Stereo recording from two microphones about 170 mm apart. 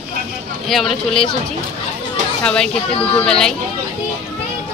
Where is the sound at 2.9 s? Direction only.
30° left (ahead or behind).